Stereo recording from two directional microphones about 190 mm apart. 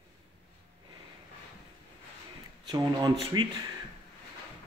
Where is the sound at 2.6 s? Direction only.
25° right (ahead or behind).